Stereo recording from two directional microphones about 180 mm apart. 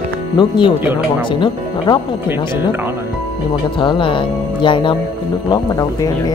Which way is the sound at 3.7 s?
30° left (ahead or behind).